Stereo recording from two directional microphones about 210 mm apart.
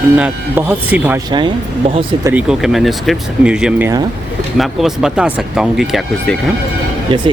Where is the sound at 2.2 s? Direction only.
5° right (ahead or behind).